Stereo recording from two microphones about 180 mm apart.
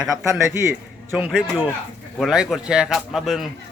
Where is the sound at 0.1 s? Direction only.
15° right (ahead or behind).